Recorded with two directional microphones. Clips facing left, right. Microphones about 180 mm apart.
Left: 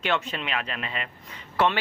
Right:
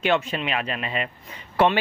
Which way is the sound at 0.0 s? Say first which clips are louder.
Right 5 dB; 10° right (ahead or behind).